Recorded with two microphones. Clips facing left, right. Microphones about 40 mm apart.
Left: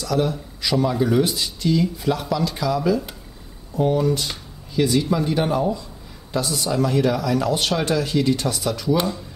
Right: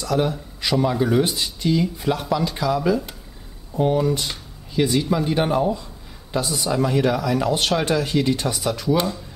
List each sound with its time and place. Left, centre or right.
0.0 s speech: centre